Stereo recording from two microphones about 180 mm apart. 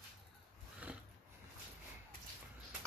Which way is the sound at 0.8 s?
10° right (ahead or behind).